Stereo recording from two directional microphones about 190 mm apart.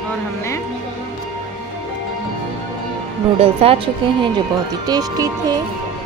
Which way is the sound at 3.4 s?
30° right (ahead or behind).